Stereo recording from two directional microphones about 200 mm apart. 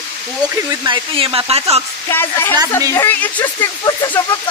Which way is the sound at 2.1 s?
10° left (ahead or behind).